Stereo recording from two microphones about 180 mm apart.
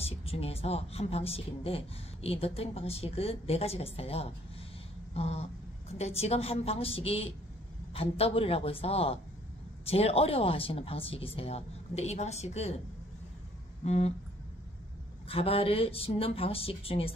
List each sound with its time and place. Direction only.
0.0 s a woman's voice: 35° left (ahead or behind)
13.8 s a woman's voice: 35° left (ahead or behind)
15.2 s a woman's voice: 30° left (ahead or behind)